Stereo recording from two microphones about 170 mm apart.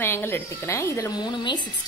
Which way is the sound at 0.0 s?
15° left (ahead or behind).